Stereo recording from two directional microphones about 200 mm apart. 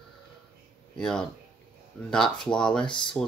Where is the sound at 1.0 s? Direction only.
5° left (ahead or behind).